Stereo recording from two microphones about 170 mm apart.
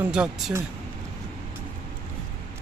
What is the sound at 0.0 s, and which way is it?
Speech, 5° right (ahead or behind).